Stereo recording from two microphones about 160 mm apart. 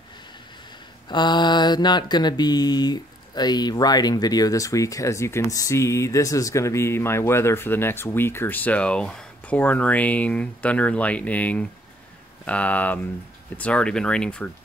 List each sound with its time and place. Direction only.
1.0 s mantra: 30° left (ahead or behind); by 13.1 s 10° left (ahead or behind)
13.6 s speech: 5° left (ahead or behind)